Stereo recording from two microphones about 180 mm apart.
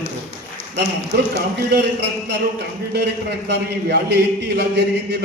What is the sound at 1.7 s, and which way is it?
A man's voice, 70° right (ahead or behind).